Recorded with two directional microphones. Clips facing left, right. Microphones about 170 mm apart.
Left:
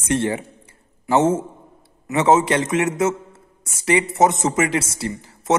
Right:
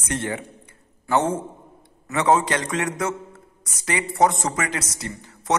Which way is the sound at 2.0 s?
25° left (ahead or behind).